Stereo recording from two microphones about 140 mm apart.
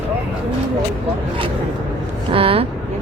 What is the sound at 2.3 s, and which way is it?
Vehicle, 40° right (ahead or behind).